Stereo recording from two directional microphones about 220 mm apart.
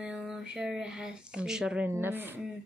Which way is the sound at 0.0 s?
5° right (ahead or behind).